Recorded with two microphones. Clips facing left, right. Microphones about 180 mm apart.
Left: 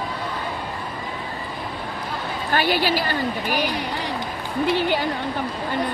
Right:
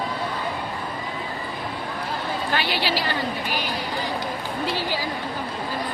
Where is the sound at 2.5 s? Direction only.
45° left (ahead or behind).